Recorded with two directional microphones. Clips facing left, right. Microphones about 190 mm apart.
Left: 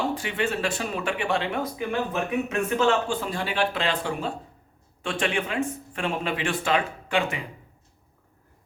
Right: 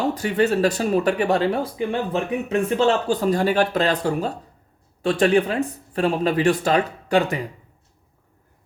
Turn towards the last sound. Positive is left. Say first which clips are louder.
# right 6 dB
turn(degrees=-40)  # may be behind; listen again after turning